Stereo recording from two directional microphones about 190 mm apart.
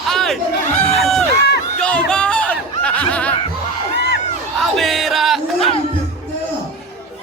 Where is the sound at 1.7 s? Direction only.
5° left (ahead or behind).